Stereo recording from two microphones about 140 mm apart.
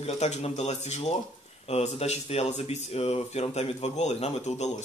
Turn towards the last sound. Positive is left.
turn(degrees=50)  # may be behind; listen again after turning